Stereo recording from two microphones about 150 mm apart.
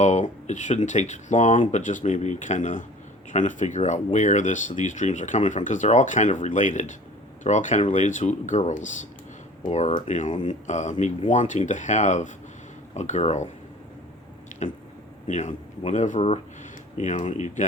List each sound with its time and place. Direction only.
0.0 s speech: 50° left (ahead or behind)
14.5 s squish: 55° left (ahead or behind)
15.3 s speech: 55° left (ahead or behind)